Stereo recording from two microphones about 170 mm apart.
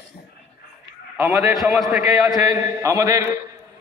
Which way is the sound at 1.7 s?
Centre (ahead or behind).